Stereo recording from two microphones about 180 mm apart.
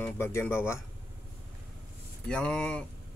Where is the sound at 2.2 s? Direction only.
5° left (ahead or behind).